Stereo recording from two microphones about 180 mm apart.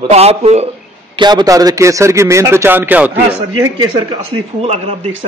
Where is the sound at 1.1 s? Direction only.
25° right (ahead or behind).